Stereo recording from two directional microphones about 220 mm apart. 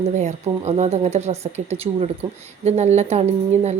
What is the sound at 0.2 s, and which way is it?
Speech, 30° right (ahead or behind).